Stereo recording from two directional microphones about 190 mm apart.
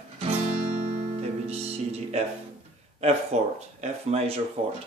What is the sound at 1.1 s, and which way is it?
Music, 35° right (ahead or behind).